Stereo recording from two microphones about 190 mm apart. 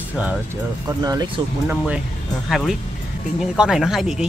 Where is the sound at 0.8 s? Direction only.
20° right (ahead or behind).